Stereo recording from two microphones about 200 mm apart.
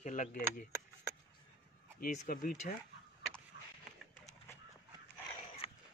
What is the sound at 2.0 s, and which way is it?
Speech, 45° left (ahead or behind).